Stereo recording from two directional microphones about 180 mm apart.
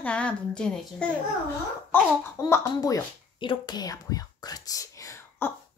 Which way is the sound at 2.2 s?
15° left (ahead or behind).